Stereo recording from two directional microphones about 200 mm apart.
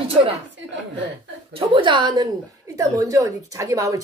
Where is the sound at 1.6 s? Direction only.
25° right (ahead or behind).